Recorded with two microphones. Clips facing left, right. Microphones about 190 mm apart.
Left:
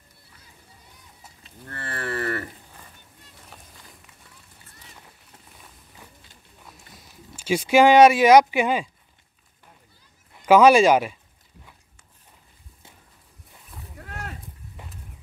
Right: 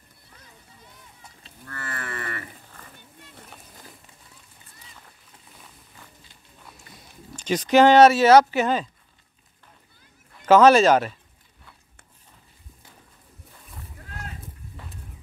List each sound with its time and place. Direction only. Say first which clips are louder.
1.7 s livestock: left 4 dB; 30° left (ahead or behind)
6.9 s speech: right 6 dB; 5° left (ahead or behind)
10.3 s speech: even; 10° left (ahead or behind)